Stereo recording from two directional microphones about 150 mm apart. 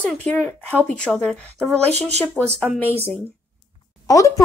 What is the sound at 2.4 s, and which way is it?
Speech, 10° right (ahead or behind).